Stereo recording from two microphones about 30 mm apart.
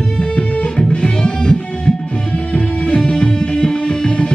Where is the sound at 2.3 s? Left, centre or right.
Left.